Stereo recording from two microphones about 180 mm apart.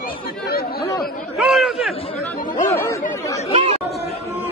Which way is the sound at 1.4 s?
Centre (ahead or behind).